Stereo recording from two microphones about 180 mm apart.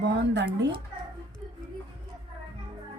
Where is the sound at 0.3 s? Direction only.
75° right (ahead or behind).